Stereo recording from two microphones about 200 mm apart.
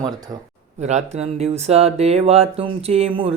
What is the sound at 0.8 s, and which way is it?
Speech, 35° right (ahead or behind).